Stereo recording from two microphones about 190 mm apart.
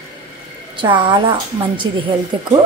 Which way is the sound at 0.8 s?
25° right (ahead or behind).